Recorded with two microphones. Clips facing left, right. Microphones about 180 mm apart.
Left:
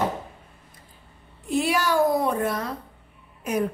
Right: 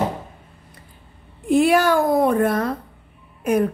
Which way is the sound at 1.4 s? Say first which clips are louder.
Right 8 dB; 55° right (ahead or behind).